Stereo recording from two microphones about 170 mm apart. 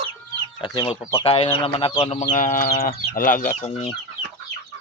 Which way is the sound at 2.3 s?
50° left (ahead or behind).